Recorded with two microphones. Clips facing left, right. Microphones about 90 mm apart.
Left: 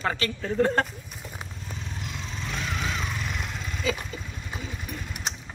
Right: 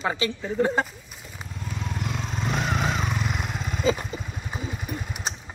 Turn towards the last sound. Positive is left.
turn(degrees=-35)  # may be behind; listen again after turning